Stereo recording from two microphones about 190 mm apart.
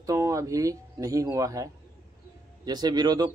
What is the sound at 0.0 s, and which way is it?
A man's voice, 15° right (ahead or behind).